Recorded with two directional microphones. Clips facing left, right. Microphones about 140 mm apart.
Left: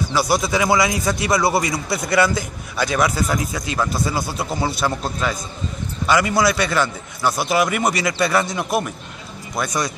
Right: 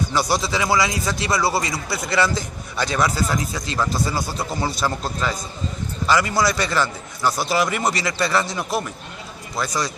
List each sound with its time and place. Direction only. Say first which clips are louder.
0.1 s a man's voice: left 5 dB; 10° left (ahead or behind)